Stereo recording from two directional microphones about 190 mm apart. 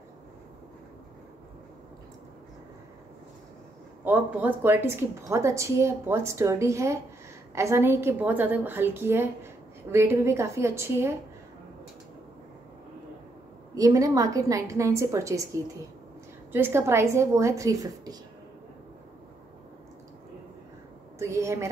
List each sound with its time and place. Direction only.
4.0 s a woman's voice: 10° right (ahead or behind)
13.7 s a woman's voice: 15° right (ahead or behind)
21.2 s a woman's voice: 15° right (ahead or behind)